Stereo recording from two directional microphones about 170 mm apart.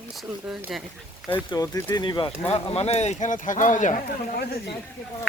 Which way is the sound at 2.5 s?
40° left (ahead or behind).